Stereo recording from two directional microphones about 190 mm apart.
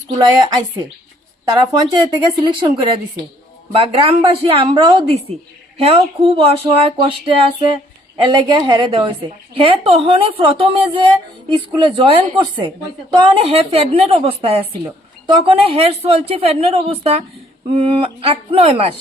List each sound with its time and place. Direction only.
0.1 s a woman's voice: 20° right (ahead or behind)